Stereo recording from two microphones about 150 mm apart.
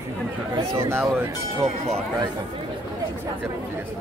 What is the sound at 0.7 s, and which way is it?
Speech, 15° right (ahead or behind).